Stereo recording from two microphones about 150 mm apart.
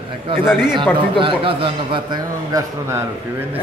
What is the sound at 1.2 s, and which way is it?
A man's voice, 35° right (ahead or behind).